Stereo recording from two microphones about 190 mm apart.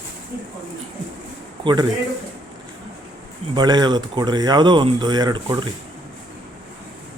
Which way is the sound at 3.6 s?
20° right (ahead or behind).